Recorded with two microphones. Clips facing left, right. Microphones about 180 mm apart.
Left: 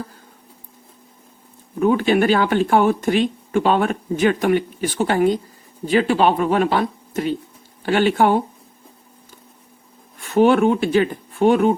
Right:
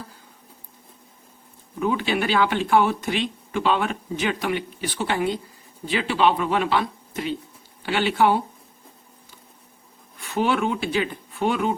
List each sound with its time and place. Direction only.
1.8 s speech: 50° left (ahead or behind)
10.2 s speech: 50° left (ahead or behind)